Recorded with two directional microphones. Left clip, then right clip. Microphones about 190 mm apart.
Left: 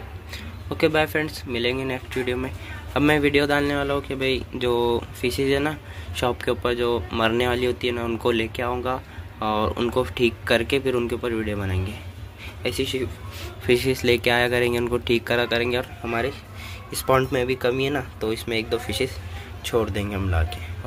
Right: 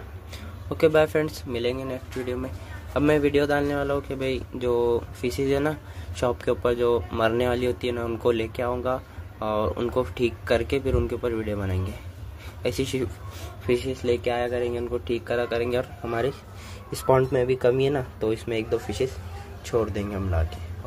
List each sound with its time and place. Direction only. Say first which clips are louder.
0.3 s speech: left 2 dB; 10° right (ahead or behind)
12.6 s speech: left 1 dB; 25° right (ahead or behind)
13.7 s speech: left 4 dB; 5° left (ahead or behind)